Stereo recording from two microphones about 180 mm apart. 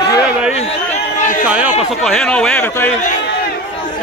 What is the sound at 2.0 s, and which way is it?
Speech, centre (ahead or behind).